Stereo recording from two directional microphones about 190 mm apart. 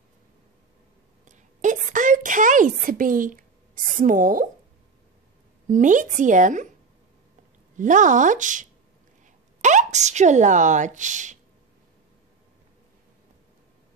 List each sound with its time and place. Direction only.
1.2 s a sound: 40° right (ahead or behind)
4.0 s speech: 45° right (ahead or behind)
5.7 s speech: 40° right (ahead or behind)
7.7 s speech: 40° right (ahead or behind)